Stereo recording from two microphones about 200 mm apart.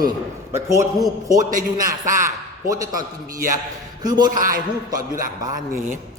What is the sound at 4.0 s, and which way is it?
Speech, 20° right (ahead or behind).